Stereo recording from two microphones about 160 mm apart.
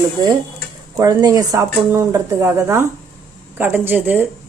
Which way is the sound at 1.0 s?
25° right (ahead or behind).